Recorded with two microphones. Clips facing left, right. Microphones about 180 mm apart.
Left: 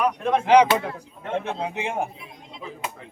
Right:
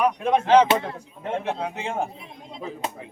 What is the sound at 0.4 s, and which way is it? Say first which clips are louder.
A man's voice: left 1 dB; 15° left (ahead or behind).